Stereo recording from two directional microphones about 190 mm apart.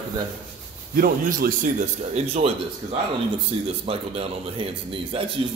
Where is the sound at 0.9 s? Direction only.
50° right (ahead or behind).